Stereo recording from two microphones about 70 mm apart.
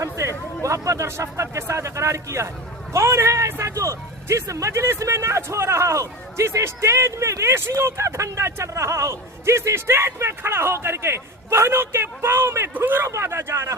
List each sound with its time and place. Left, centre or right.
0.0 s speech: right
12.7 s speech: right
13.1 s speech: right